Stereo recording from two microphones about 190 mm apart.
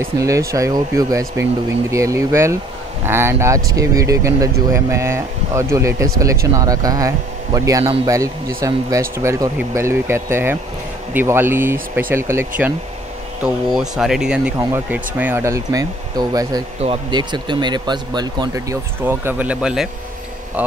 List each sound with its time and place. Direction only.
0.0 s speech: 15° right (ahead or behind)